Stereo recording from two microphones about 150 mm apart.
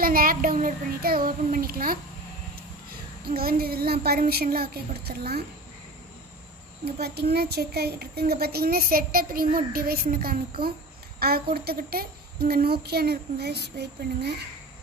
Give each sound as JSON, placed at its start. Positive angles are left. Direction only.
{"t": 0.0, "sound": "child singing", "side_deg": -75}
{"t": 3.3, "sound": "a woman's voice", "side_deg": -85}
{"t": 6.8, "sound": "a woman's voice", "side_deg": -90}